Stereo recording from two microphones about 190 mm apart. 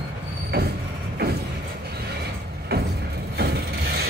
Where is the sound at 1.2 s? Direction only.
55° right (ahead or behind).